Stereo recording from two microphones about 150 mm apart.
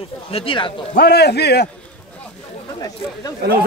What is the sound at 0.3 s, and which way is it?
Speech, 40° left (ahead or behind).